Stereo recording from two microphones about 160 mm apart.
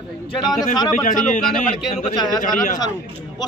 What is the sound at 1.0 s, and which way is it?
A man's voice, 55° left (ahead or behind).